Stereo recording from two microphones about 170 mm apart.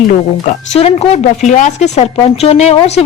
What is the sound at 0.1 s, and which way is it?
Speech, 45° left (ahead or behind).